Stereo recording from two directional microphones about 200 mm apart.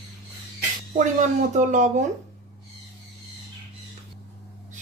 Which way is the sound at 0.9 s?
40° right (ahead or behind).